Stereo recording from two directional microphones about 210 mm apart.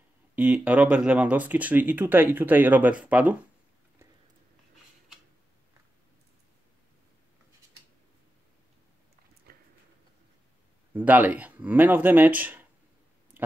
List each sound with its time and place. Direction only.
0.4 s speech: 5° right (ahead or behind)
9.5 s a sound: 45° right (ahead or behind)
10.9 s speech: 10° right (ahead or behind)